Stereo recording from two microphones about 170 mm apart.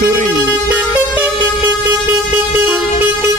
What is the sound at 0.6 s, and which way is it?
Vehicle, 10° right (ahead or behind).